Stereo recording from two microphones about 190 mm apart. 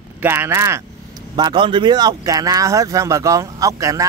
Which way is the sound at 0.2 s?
10° right (ahead or behind).